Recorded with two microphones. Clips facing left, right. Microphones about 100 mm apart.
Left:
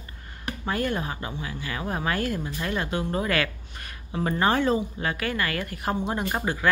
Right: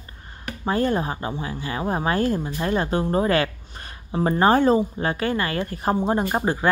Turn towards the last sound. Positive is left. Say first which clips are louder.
# right 5 dB
turn(degrees=-30)  # may be behind; listen again after turning